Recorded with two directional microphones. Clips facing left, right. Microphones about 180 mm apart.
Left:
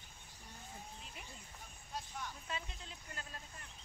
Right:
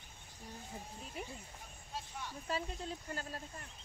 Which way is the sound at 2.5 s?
40° right (ahead or behind).